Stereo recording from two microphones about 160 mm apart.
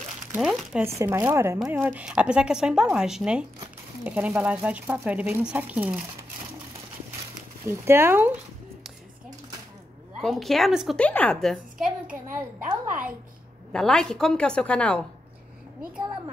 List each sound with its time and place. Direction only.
0.4 s crumpling: centre (ahead or behind)
0.8 s speech: 20° right (ahead or behind)
7.6 s speech: 15° right (ahead or behind)
10.2 s speech: centre (ahead or behind)
12.5 s speech: 10° right (ahead or behind)
13.7 s speech: 5° left (ahead or behind)